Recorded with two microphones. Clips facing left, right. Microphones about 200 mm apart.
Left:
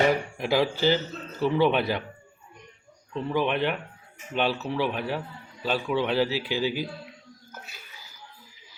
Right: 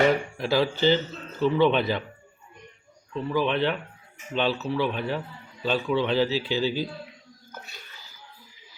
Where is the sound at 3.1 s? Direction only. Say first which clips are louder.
Right 1 dB; 15° left (ahead or behind).